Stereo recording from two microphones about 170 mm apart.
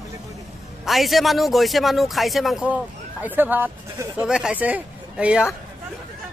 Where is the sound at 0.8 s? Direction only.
Centre (ahead or behind).